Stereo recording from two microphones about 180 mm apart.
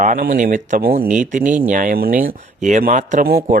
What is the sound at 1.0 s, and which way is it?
Speech, 45° right (ahead or behind).